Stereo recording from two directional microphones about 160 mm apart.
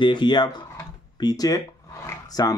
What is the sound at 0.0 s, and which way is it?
Speech, 30° left (ahead or behind).